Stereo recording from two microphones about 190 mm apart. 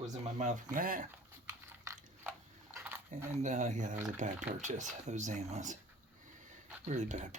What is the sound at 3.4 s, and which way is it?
Speech, 35° right (ahead or behind).